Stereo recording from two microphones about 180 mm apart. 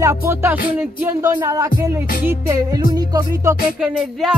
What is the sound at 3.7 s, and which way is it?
Music, 5° right (ahead or behind).